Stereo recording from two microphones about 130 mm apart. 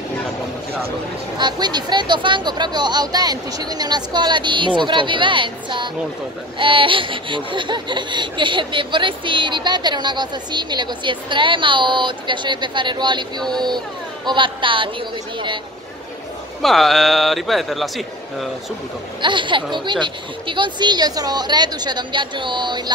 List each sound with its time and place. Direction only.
1.4 s speech: 35° right (ahead or behind)
16.6 s a man's voice: centre (ahead or behind)
19.2 s speech: 40° right (ahead or behind)